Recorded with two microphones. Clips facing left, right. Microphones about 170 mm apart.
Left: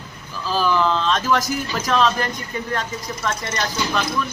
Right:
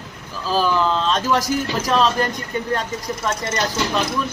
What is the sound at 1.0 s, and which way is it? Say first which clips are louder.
A man's voice: right 1 dB; 35° right (ahead or behind).